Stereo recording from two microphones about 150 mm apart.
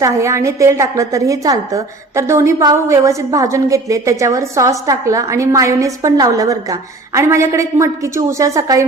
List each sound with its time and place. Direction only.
0.0 s a woman's voice: 20° right (ahead or behind)